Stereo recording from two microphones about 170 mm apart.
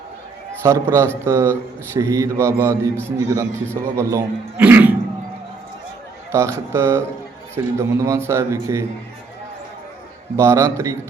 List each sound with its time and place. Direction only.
0.6 s a man's voice: 15° right (ahead or behind)
6.3 s a man's voice: 15° right (ahead or behind)
10.3 s a man's voice: 15° right (ahead or behind)